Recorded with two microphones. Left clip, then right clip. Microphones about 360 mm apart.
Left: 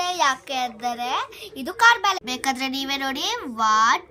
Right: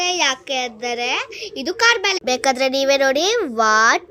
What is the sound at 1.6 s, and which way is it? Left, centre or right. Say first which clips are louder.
Speech: right 1 dB; centre.